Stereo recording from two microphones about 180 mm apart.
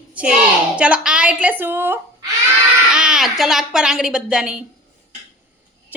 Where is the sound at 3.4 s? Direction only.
Centre (ahead or behind).